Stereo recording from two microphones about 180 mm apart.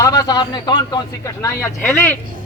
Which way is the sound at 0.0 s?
20° left (ahead or behind).